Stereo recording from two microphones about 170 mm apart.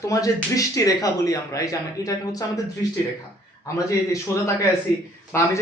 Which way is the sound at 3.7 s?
20° left (ahead or behind).